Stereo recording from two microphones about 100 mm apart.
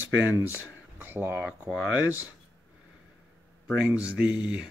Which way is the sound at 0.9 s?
20° right (ahead or behind).